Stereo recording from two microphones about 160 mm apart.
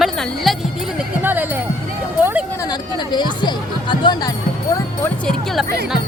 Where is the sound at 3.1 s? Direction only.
30° left (ahead or behind).